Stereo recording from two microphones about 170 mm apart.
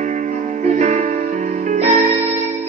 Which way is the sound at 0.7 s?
45° right (ahead or behind).